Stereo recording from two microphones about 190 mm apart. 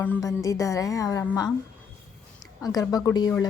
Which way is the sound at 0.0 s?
15° left (ahead or behind).